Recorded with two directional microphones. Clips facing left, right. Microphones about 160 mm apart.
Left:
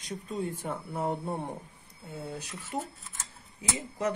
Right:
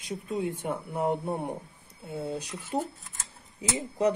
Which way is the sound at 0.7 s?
15° right (ahead or behind).